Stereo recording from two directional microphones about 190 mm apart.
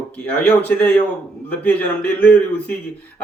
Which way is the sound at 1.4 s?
10° left (ahead or behind).